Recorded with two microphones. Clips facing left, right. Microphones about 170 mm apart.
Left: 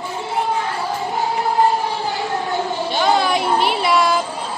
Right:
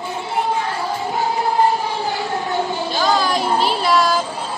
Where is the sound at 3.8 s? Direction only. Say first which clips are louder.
Even; centre (ahead or behind).